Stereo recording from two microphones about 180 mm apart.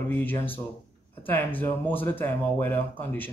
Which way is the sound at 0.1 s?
10° left (ahead or behind).